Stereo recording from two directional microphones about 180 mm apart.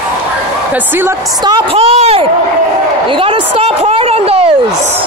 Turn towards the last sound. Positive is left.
turn(degrees=-35)  # may be behind; listen again after turning